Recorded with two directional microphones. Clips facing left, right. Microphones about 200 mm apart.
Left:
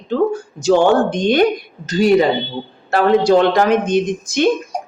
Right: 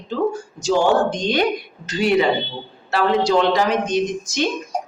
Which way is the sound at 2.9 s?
50° left (ahead or behind).